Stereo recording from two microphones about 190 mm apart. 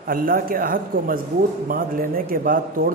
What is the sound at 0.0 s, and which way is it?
A man's voice, 50° right (ahead or behind).